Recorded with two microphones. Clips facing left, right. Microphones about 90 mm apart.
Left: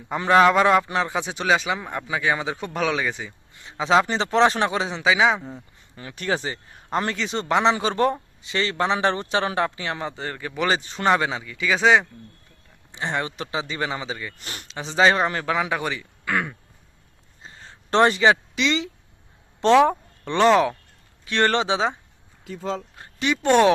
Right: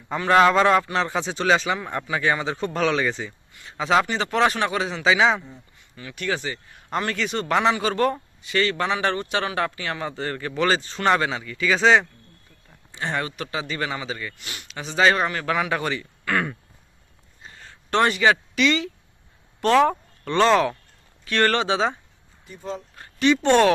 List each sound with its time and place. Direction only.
0.3 s a man's voice: 10° left (ahead or behind)
5.0 s speech: 10° left (ahead or behind)
6.0 s a man's voice: 30° left (ahead or behind)
14.3 s speech: 40° left (ahead or behind)
14.7 s a man's voice: 25° left (ahead or behind); by 16.6 s 5° left (ahead or behind)
17.4 s a sound: 25° left (ahead or behind)
19.6 s a man's voice: 15° left (ahead or behind)
22.4 s speech: 90° left
23.0 s speech: 10° left (ahead or behind)